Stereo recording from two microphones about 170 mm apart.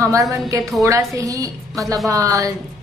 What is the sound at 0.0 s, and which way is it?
A woman's voice, 20° right (ahead or behind).